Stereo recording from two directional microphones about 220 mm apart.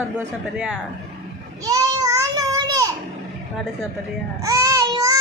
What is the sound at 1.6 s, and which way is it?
Child singing, 15° right (ahead or behind).